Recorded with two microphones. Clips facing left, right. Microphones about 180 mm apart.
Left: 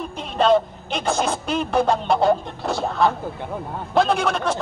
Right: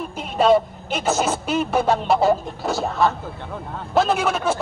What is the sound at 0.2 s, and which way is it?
Speech, 5° right (ahead or behind).